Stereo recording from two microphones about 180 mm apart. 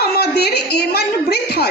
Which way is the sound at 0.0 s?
65° left (ahead or behind).